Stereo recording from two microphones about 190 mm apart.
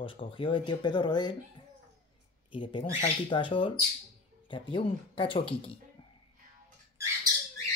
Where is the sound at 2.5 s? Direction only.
25° left (ahead or behind).